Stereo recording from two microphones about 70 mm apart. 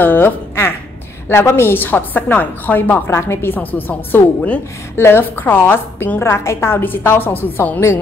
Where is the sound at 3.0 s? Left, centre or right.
Left.